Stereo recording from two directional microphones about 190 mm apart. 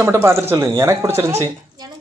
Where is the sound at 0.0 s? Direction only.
15° right (ahead or behind).